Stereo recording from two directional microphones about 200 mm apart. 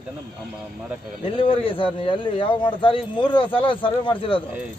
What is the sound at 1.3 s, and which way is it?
A man's voice, 25° left (ahead or behind).